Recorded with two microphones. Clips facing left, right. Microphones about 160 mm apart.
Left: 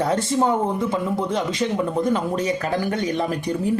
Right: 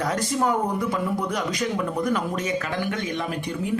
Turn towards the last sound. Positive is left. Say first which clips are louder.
# left 4 dB
turn(degrees=35)  # may be behind; listen again after turning